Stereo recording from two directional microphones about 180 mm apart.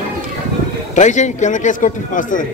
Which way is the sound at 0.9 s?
40° left (ahead or behind).